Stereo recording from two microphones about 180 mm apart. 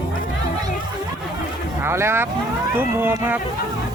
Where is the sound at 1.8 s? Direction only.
15° right (ahead or behind).